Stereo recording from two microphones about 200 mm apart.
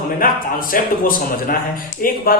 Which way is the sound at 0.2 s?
45° left (ahead or behind).